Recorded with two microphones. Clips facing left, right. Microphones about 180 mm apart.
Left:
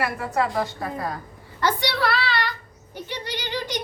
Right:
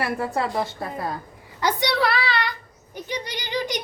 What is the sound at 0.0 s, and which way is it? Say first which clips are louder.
A woman's voice: even; 30° right (ahead or behind).